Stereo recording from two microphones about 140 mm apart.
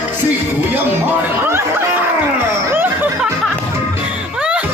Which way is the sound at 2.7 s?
15° right (ahead or behind).